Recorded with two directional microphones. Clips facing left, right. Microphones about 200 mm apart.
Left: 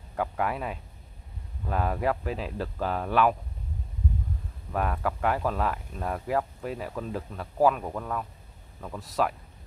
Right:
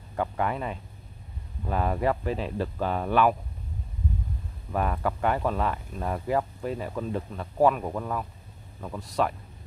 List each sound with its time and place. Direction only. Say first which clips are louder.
0.1 s speech: right 1 dB; 5° left (ahead or behind)
4.7 s speech: right 1 dB; centre (ahead or behind)